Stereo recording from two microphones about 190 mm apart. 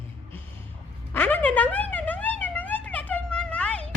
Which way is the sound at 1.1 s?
10° left (ahead or behind).